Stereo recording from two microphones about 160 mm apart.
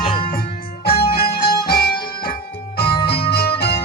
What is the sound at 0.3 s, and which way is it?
Music, 70° left (ahead or behind).